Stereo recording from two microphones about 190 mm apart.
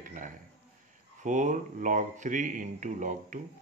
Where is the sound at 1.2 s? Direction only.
40° right (ahead or behind).